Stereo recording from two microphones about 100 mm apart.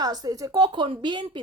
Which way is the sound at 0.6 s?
55° right (ahead or behind).